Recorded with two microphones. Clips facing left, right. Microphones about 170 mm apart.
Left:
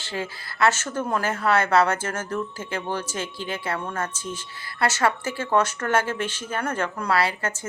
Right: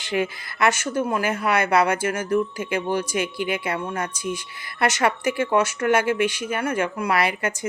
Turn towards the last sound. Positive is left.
turn(degrees=-15)  # may be behind; listen again after turning